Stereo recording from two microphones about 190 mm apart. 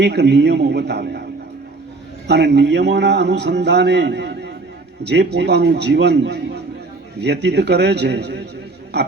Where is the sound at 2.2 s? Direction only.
65° right (ahead or behind).